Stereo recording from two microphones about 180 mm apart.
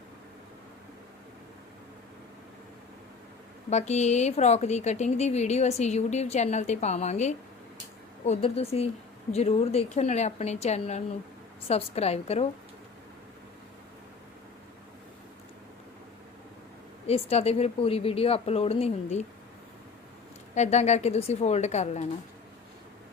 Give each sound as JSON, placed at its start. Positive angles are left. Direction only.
{"t": 3.7, "sound": "speech", "side_deg": 40}
{"t": 17.1, "sound": "speech", "side_deg": 35}
{"t": 20.6, "sound": "speech", "side_deg": 40}